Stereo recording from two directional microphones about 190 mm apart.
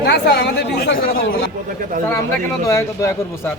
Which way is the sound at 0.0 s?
60° left (ahead or behind).